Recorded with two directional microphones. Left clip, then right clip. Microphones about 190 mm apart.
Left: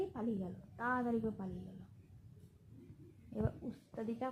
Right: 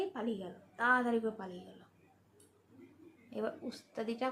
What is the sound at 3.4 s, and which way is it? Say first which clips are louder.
Speech: right 5 dB; 10° right (ahead or behind).